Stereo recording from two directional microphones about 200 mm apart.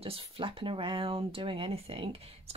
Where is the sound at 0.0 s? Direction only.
25° right (ahead or behind).